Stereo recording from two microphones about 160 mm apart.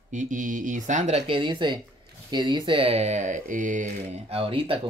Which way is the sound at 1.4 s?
30° right (ahead or behind).